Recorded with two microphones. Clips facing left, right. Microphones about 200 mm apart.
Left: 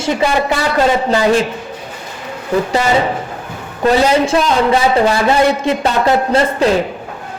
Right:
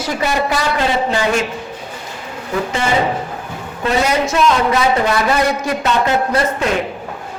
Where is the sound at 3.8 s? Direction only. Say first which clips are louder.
Left 5 dB; 30° left (ahead or behind).